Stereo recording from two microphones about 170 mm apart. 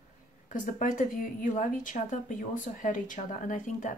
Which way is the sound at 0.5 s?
50° left (ahead or behind).